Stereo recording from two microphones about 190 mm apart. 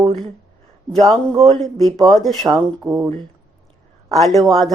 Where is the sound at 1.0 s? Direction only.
Centre (ahead or behind).